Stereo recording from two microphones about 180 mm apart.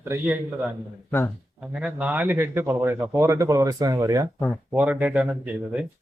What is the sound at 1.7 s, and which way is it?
A man's voice, 5° right (ahead or behind).